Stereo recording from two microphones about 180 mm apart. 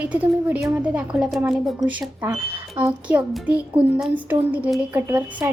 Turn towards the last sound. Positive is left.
turn(degrees=-15)  # may be behind; listen again after turning